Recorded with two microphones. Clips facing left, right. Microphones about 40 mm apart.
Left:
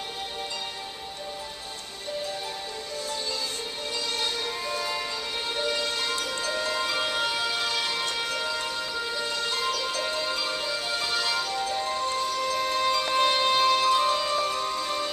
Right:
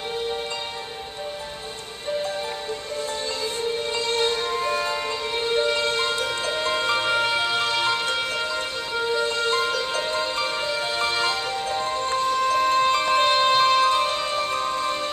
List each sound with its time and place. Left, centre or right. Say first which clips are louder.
3.9 s music: right 5 dB; right